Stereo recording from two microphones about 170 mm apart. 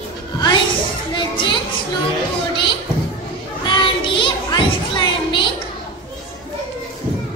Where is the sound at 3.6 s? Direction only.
30° left (ahead or behind).